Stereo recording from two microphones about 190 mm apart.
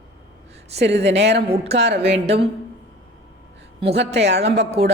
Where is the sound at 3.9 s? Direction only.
65° right (ahead or behind).